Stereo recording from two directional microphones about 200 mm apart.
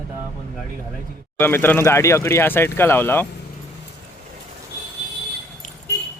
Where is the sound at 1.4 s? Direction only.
10° left (ahead or behind).